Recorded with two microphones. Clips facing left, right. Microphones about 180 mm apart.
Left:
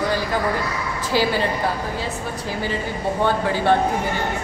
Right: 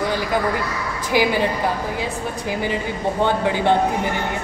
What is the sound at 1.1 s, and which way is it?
A woman's voice, 15° right (ahead or behind).